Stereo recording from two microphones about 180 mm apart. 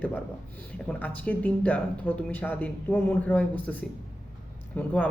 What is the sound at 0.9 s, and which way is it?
Speech, 10° left (ahead or behind).